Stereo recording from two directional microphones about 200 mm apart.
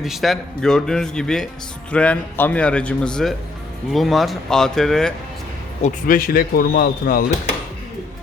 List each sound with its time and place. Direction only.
0.0 s a man's voice: centre (ahead or behind)
5.8 s speech: 45° left (ahead or behind)